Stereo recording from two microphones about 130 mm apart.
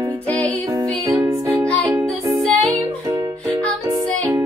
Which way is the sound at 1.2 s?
20° right (ahead or behind).